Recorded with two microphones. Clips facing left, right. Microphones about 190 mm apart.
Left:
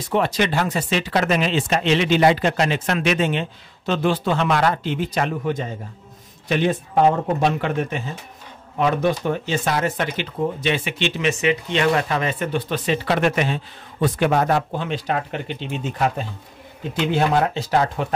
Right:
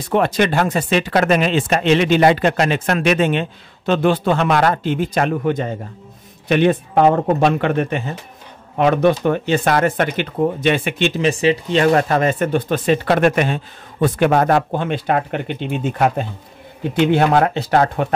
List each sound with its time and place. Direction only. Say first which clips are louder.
0.1 s speech: right 4 dB; 55° right (ahead or behind)
11.1 s speech: right 3 dB; 35° right (ahead or behind); by 18.0 s 60° right (ahead or behind)